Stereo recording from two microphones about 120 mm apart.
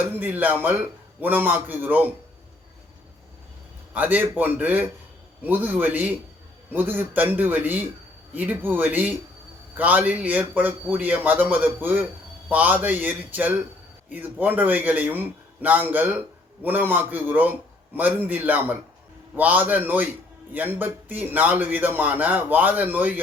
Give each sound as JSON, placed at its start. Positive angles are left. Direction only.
{"t": 0.2, "sound": "a man's voice", "side_deg": -15}
{"t": 3.9, "sound": "a man's voice", "side_deg": -15}